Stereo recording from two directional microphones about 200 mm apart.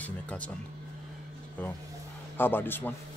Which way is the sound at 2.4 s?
10° left (ahead or behind).